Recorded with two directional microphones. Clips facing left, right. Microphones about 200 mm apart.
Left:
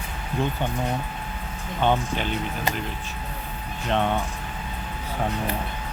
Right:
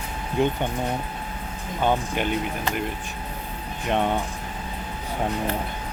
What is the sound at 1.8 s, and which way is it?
Speech, 10° right (ahead or behind).